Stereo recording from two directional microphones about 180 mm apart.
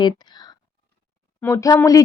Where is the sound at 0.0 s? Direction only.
25° left (ahead or behind).